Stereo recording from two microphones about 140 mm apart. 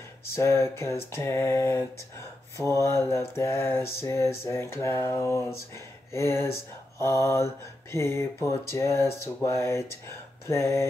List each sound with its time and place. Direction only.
0.3 s mantra: 20° left (ahead or behind)